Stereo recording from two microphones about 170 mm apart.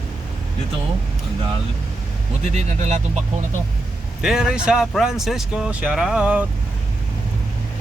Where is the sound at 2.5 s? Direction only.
40° right (ahead or behind).